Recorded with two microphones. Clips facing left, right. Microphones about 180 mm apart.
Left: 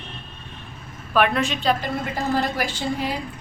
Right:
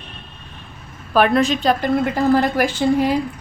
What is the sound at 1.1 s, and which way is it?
A woman's voice, 35° right (ahead or behind).